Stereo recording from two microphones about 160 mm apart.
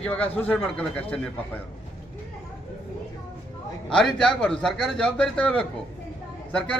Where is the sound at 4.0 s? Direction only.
5° left (ahead or behind).